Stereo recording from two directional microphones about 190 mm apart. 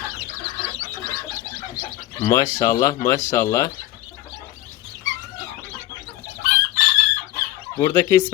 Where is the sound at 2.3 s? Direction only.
15° left (ahead or behind).